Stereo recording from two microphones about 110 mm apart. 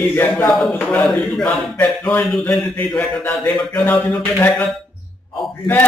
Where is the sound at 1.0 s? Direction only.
Centre (ahead or behind).